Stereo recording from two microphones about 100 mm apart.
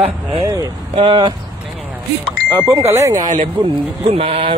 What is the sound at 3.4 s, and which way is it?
Speech, 65° right (ahead or behind).